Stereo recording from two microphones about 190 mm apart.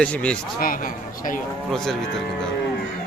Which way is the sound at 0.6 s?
45° left (ahead or behind).